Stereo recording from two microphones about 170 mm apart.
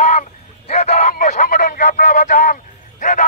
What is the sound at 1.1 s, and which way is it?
Vehicle, 50° left (ahead or behind).